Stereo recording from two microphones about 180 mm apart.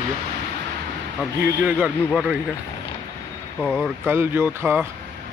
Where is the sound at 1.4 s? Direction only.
10° right (ahead or behind).